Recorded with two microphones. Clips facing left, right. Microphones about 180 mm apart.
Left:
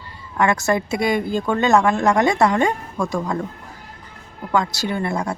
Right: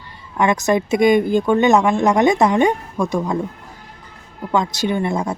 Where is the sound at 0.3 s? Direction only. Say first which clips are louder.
Right 2 dB; 20° right (ahead or behind).